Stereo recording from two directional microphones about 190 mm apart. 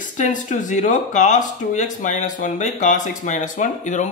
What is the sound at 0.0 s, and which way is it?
Speech, 45° left (ahead or behind).